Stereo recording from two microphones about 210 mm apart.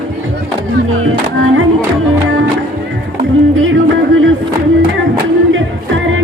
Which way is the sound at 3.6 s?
65° right (ahead or behind).